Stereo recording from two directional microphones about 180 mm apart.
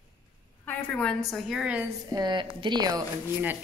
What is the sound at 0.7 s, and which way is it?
A woman's voice, 5° left (ahead or behind).